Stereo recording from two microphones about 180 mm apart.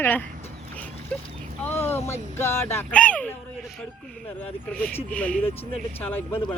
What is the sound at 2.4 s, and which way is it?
Speech, 15° left (ahead or behind).